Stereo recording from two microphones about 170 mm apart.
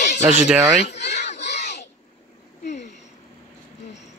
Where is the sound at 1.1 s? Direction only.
45° left (ahead or behind).